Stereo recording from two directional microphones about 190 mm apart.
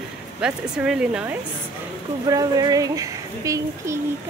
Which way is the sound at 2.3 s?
20° right (ahead or behind).